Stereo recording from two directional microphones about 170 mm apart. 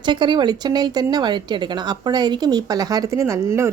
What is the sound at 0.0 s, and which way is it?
Speech, 25° right (ahead or behind).